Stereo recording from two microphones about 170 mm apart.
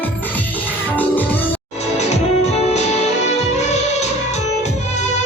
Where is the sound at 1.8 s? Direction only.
40° left (ahead or behind).